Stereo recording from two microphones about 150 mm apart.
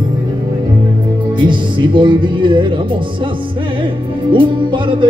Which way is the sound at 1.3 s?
30° right (ahead or behind).